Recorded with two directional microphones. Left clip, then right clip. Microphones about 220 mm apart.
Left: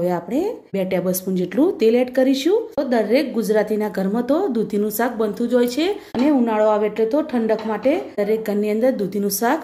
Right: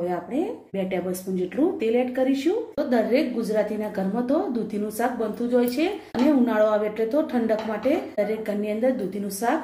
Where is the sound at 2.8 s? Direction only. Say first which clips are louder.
Left 4 dB; 30° left (ahead or behind).